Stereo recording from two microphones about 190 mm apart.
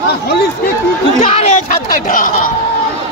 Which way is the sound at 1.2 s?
35° left (ahead or behind).